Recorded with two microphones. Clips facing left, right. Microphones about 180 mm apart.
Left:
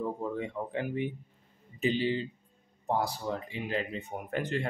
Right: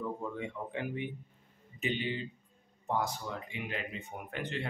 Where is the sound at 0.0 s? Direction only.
35° left (ahead or behind).